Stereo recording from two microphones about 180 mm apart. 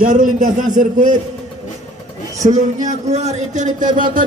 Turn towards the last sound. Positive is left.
turn(degrees=-50)  # may be behind; listen again after turning